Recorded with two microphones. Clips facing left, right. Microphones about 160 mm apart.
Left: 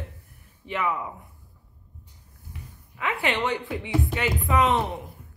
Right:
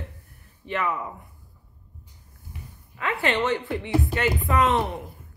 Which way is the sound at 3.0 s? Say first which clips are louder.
Right 2 dB; 15° left (ahead or behind).